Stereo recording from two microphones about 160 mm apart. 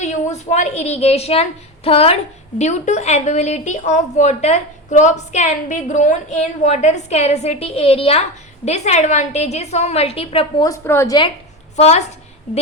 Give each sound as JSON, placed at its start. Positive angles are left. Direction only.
{"t": 0.0, "sound": "a woman's voice", "side_deg": 45}
{"t": 10.7, "sound": "a woman's voice", "side_deg": 20}
{"t": 11.8, "sound": "a woman's voice", "side_deg": 40}